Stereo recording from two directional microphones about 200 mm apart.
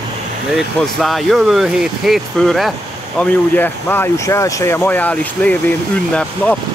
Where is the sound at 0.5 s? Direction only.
Centre (ahead or behind).